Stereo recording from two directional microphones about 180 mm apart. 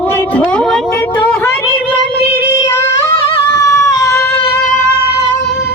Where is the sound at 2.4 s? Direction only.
15° left (ahead or behind).